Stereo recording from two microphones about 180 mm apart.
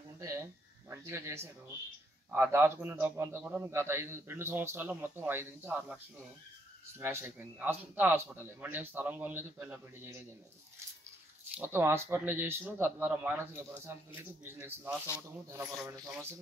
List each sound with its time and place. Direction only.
0.2 s a man's voice: 15° right (ahead or behind)
11.5 s a man's voice: 10° right (ahead or behind)